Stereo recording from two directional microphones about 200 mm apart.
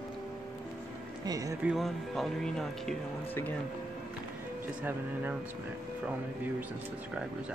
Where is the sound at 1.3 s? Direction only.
15° right (ahead or behind).